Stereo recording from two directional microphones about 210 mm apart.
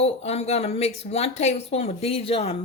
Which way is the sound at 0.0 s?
30° left (ahead or behind).